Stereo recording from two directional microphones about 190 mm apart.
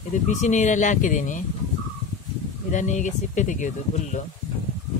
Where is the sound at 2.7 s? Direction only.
40° left (ahead or behind).